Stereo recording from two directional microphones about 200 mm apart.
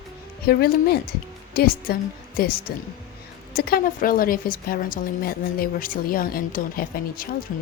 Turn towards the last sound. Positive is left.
turn(degrees=45)  # may be behind; listen again after turning